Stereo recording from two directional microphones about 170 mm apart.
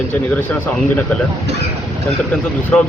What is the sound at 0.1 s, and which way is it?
Speech, 10° left (ahead or behind).